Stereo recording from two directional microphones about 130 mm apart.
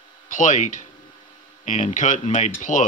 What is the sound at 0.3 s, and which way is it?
Speech, 75° left (ahead or behind).